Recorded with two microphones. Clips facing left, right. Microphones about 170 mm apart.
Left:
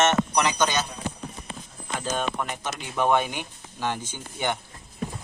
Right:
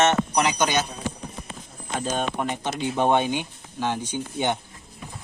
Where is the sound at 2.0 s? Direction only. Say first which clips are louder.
Right 2 dB; 20° right (ahead or behind).